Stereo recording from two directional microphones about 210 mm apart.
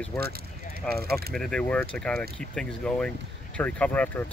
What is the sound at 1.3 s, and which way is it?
Speech, 5° left (ahead or behind).